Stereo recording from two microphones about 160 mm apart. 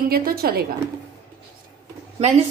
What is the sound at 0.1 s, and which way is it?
Speech, 70° right (ahead or behind).